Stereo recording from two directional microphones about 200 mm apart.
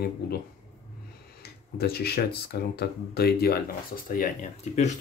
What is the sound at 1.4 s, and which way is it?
Tick-tock, 55° left (ahead or behind).